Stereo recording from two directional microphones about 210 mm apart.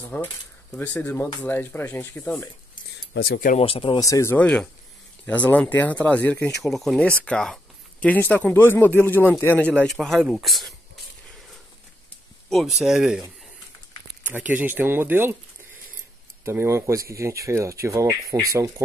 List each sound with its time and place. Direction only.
0.1 s speech: 5° left (ahead or behind)
3.1 s speech: 50° left (ahead or behind)
3.6 s speech: 25° left (ahead or behind); by 10.7 s centre (ahead or behind)
12.7 s speech: centre (ahead or behind)
14.2 s speech: 10° right (ahead or behind)
16.4 s speech: 10° right (ahead or behind)